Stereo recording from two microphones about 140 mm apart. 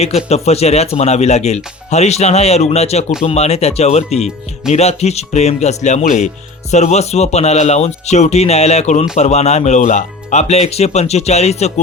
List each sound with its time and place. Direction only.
0.0 s speech: 50° left (ahead or behind)